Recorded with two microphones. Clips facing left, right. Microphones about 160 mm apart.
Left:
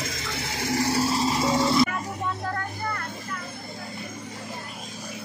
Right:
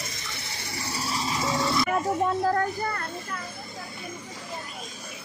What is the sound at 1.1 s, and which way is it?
Vehicle, 30° left (ahead or behind).